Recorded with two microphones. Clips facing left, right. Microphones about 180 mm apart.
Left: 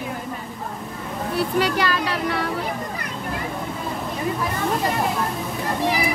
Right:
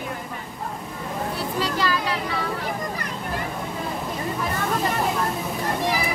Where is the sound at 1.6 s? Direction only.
65° left (ahead or behind).